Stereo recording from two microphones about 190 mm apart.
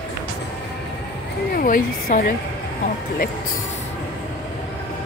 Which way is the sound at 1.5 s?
50° left (ahead or behind).